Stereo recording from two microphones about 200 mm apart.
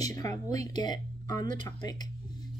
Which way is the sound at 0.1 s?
15° left (ahead or behind).